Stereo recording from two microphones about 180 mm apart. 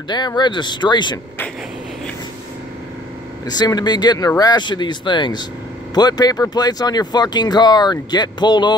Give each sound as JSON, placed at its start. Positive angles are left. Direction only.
{"t": 0.1, "sound": "speech", "side_deg": 25}
{"t": 3.4, "sound": "speech", "side_deg": 25}